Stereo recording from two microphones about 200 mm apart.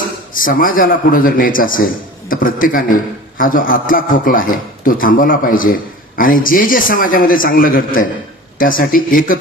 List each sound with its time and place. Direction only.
0.3 s a man's voice: 45° left (ahead or behind)